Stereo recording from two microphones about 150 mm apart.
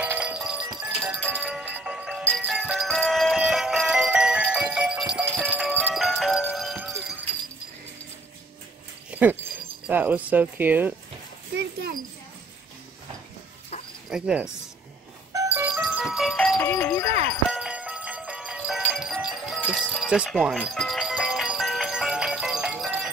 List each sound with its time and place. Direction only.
0.0 s music: 10° right (ahead or behind)
9.1 s dog: 10° right (ahead or behind)
9.8 s speech: 10° right (ahead or behind)
11.5 s a child's voice: 90° right
14.0 s speech: 5° right (ahead or behind)
15.3 s music: 15° right (ahead or behind)
15.7 s music: 5° right (ahead or behind)
16.6 s music: 15° left (ahead or behind)
17.5 s music: 5° right (ahead or behind)